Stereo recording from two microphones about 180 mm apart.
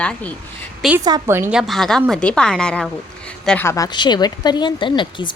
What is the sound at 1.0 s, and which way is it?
Speech, 20° right (ahead or behind).